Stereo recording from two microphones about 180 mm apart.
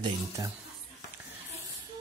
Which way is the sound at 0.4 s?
20° right (ahead or behind).